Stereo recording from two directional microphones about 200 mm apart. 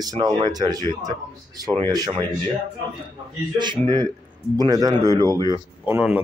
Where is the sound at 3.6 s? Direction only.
20° right (ahead or behind).